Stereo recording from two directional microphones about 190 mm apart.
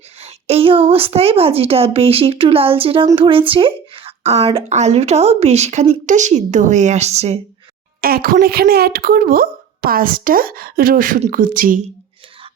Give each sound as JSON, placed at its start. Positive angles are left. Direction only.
{"t": 0.2, "sound": "speech", "side_deg": -30}
{"t": 8.0, "sound": "speech", "side_deg": -50}